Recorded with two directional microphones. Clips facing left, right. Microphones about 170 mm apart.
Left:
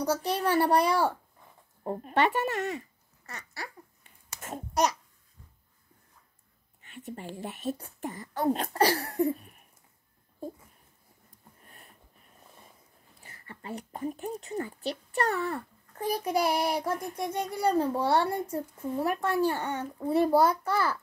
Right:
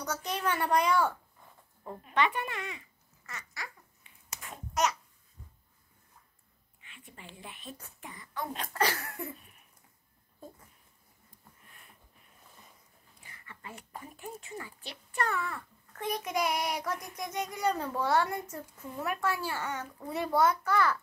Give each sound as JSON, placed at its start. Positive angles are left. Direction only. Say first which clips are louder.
{"t": 0.0, "sound": "a child's voice", "louder": "left 6 dB", "side_deg": 30}
{"t": 6.8, "sound": "a child's voice", "louder": "left 12 dB", "side_deg": 45}
{"t": 11.6, "sound": "sniff", "louder": "left 7 dB", "side_deg": 40}
{"t": 13.2, "sound": "a sound", "louder": "left 4 dB", "side_deg": 35}
{"t": 14.4, "sound": "a child's voice", "louder": "left 10 dB", "side_deg": 40}